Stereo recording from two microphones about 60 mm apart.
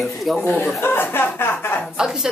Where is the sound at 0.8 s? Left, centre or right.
Left.